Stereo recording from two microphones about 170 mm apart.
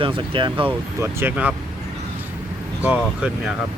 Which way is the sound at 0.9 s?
10° right (ahead or behind).